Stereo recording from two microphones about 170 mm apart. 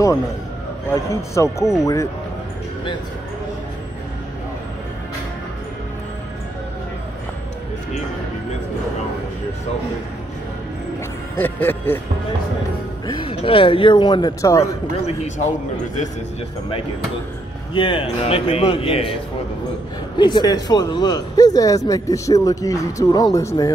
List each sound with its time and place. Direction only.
0.8 s speech: 15° left (ahead or behind)
11.3 s speech: 10° left (ahead or behind)
13.0 s speech: 30° left (ahead or behind)
17.7 s a man's voice: 30° left (ahead or behind)
20.2 s speech: 25° left (ahead or behind)